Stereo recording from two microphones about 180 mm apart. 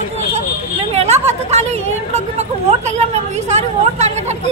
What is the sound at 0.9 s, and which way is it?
Speech, 35° right (ahead or behind).